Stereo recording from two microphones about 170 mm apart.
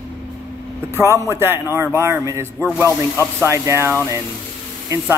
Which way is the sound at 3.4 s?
15° right (ahead or behind).